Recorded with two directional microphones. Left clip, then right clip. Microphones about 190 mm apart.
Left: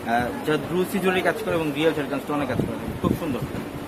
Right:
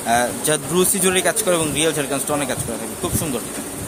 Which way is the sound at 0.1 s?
55° right (ahead or behind).